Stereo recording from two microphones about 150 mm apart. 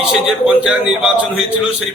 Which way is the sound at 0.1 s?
5° right (ahead or behind).